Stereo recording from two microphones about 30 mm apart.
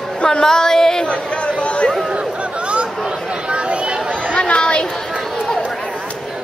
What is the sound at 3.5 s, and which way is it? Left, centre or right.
Chatter, right.